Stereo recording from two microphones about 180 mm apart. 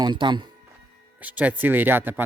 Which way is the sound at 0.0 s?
25° right (ahead or behind).